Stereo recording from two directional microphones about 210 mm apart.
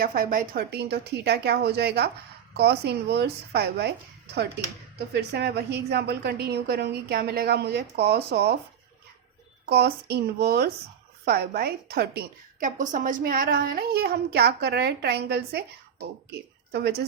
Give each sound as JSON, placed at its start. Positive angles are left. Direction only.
{"t": 0.0, "sound": "a woman's voice", "side_deg": -40}
{"t": 5.3, "sound": "a woman's voice", "side_deg": -55}
{"t": 9.6, "sound": "a woman's voice", "side_deg": -50}